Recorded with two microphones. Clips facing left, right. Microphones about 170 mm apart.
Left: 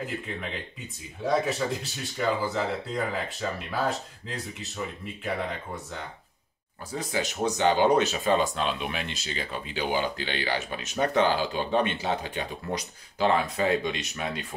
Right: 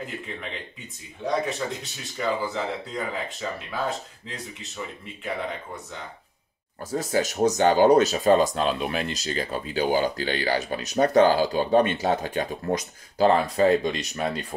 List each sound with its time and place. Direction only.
0.0 s speech: centre (ahead or behind)
6.9 s speech: 45° right (ahead or behind)